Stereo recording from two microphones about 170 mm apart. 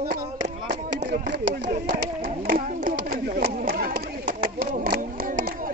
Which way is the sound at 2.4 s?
55° right (ahead or behind).